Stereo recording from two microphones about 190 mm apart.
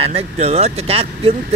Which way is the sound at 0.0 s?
35° right (ahead or behind).